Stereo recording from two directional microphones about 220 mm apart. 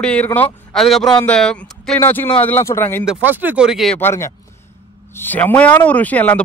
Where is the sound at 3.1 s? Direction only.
10° right (ahead or behind).